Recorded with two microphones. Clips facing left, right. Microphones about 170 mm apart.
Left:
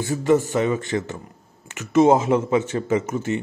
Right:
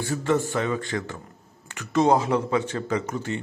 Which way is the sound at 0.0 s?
20° left (ahead or behind).